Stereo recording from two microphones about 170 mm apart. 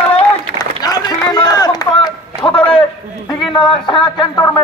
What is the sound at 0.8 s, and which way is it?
Speech, 25° left (ahead or behind).